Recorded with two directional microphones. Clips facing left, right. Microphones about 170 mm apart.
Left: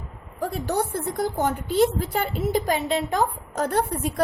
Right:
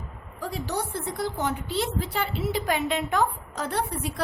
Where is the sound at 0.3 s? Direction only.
50° left (ahead or behind).